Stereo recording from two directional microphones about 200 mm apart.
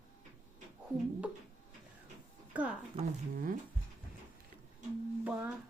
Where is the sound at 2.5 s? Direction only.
5° right (ahead or behind).